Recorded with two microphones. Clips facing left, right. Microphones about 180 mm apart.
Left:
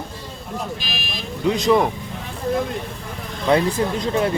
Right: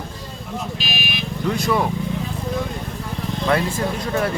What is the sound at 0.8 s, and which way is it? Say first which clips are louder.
Vehicle: right 3 dB; 70° right (ahead or behind).